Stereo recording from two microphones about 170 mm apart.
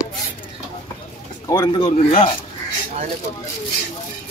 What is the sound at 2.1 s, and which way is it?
Speech, 40° left (ahead or behind).